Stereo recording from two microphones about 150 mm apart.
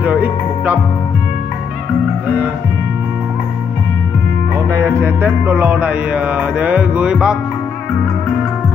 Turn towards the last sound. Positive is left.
turn(degrees=-5)  # may be behind; listen again after turning